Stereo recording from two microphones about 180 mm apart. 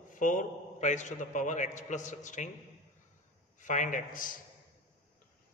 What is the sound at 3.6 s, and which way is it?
Speech, 45° left (ahead or behind).